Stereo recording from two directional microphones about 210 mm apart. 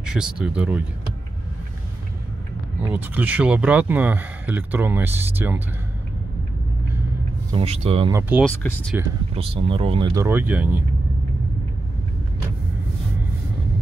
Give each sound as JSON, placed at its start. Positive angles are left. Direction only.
{"t": 0.0, "sound": "speech", "side_deg": -5}
{"t": 2.9, "sound": "speech", "side_deg": -10}
{"t": 7.5, "sound": "speech", "side_deg": -30}
{"t": 8.1, "sound": "speech", "side_deg": -10}
{"t": 8.5, "sound": "speech", "side_deg": 10}
{"t": 9.3, "sound": "speech", "side_deg": -25}
{"t": 10.1, "sound": "speech", "side_deg": -10}